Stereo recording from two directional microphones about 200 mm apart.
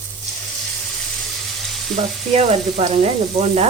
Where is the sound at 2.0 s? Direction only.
40° right (ahead or behind).